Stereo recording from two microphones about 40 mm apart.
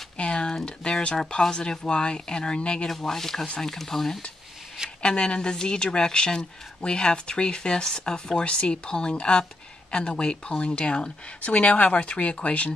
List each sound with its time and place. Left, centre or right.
0.2 s a sound: left
0.7 s speech: left
3.0 s speech: centre
5.0 s speech: left